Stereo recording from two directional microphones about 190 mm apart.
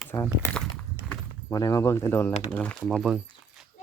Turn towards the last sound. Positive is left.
turn(degrees=0)  # may be behind; listen again after turning